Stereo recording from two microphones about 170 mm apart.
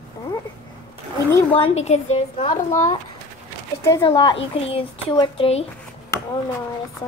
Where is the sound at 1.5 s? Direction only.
35° left (ahead or behind).